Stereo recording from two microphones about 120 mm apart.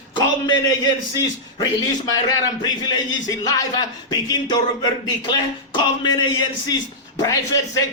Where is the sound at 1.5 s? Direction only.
30° left (ahead or behind).